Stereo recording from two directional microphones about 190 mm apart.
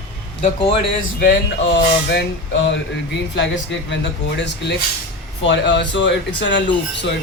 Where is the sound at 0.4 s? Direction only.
30° left (ahead or behind).